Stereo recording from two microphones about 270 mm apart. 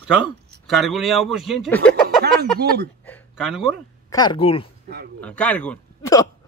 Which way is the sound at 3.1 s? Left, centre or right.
Centre.